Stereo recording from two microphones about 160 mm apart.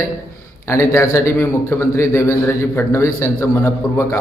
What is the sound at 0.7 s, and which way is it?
A man's voice, 20° left (ahead or behind).